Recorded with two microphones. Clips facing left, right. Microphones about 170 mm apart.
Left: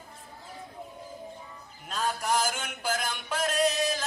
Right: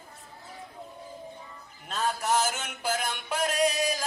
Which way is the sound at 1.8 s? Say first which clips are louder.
Right 1 dB; centre (ahead or behind).